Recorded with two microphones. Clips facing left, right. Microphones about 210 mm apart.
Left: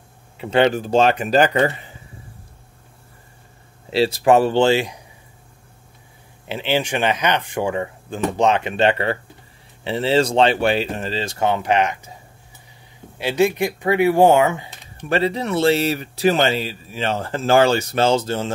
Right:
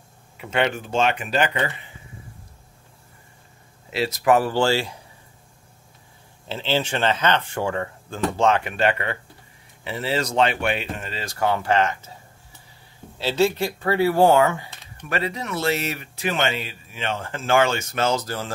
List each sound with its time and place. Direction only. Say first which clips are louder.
0.4 s speech: left 7 dB; 30° left (ahead or behind)
3.9 s speech: left 4 dB; 30° left (ahead or behind)
6.4 s speech: left 3 dB; 15° left (ahead or behind)
13.2 s speech: left 3 dB; 15° left (ahead or behind)
15.0 s speech: left 7 dB; 30° left (ahead or behind)